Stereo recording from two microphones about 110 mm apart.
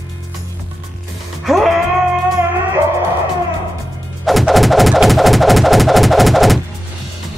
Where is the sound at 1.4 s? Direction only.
Centre (ahead or behind).